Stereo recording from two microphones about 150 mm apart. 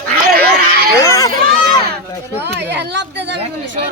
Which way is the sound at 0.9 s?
20° left (ahead or behind).